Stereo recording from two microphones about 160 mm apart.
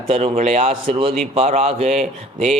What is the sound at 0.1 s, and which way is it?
A man's voice, 40° right (ahead or behind).